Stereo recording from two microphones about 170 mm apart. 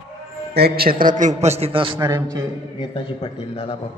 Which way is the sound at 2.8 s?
30° left (ahead or behind).